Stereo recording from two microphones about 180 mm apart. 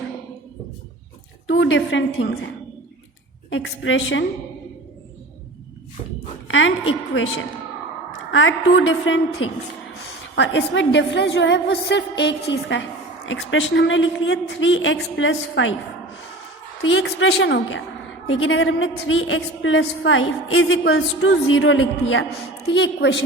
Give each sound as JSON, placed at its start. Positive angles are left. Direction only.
{"t": 1.5, "sound": "a woman's voice", "side_deg": 90}
{"t": 3.5, "sound": "a woman's voice", "side_deg": 90}
{"t": 6.5, "sound": "a woman's voice", "side_deg": 90}
{"t": 8.3, "sound": "a woman's voice", "side_deg": 90}
{"t": 16.8, "sound": "a woman's voice", "side_deg": 90}